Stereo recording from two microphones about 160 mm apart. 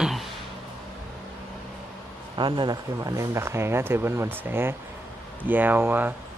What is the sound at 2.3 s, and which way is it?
Speech, 30° right (ahead or behind).